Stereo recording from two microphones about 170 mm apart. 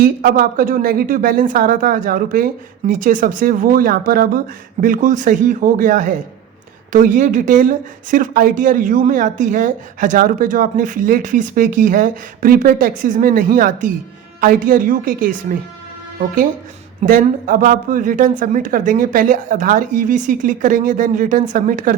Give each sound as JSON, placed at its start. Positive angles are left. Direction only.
{"t": 0.0, "sound": "a woman's voice", "side_deg": -55}
{"t": 17.0, "sound": "speech", "side_deg": -55}